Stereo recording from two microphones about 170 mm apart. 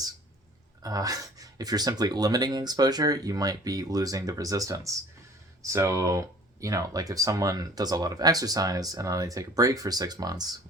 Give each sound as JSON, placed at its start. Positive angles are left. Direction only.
{"t": 0.8, "sound": "speech", "side_deg": -20}